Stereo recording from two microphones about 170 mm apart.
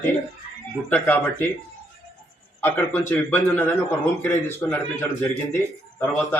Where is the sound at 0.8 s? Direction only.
10° left (ahead or behind).